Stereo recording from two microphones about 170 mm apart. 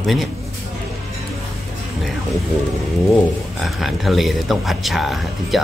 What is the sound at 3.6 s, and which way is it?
Speech, centre (ahead or behind).